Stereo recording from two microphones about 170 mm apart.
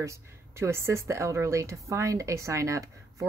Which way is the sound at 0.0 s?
15° right (ahead or behind).